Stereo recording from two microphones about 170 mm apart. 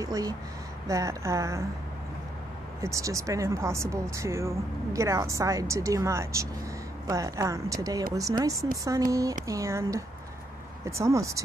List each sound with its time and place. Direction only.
0.0 s speech: 20° right (ahead or behind)
2.8 s speech: 20° right (ahead or behind)